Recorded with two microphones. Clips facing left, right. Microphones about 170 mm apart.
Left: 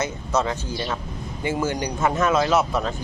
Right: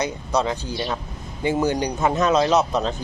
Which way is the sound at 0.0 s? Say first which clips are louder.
Right 1 dB; 15° right (ahead or behind).